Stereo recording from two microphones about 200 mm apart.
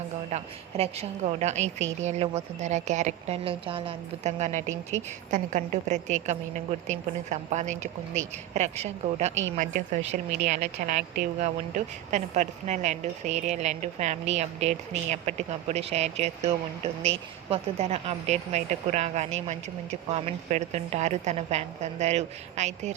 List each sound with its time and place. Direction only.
0.3 s a woman's voice: 30° right (ahead or behind)
17.5 s a woman's voice: 30° right (ahead or behind)